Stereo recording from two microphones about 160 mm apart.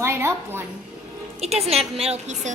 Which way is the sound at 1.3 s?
40° right (ahead or behind).